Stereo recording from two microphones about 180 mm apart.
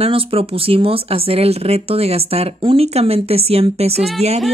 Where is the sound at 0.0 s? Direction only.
35° right (ahead or behind).